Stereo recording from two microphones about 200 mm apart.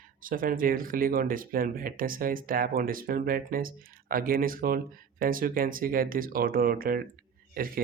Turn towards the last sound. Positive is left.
turn(degrees=-45)  # may be behind; listen again after turning